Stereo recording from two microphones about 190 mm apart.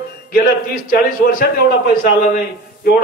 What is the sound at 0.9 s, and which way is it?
A man's voice, 50° left (ahead or behind).